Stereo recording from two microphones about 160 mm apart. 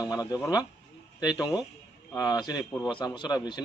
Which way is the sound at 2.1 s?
25° left (ahead or behind).